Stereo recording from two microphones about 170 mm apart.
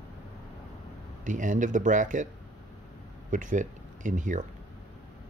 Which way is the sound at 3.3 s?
50° right (ahead or behind).